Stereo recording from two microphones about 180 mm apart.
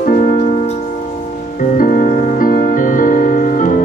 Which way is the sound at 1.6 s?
50° left (ahead or behind).